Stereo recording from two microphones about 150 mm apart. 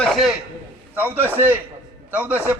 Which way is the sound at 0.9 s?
10° right (ahead or behind).